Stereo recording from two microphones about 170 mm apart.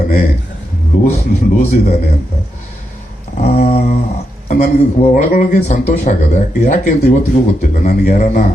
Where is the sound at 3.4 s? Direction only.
35° left (ahead or behind).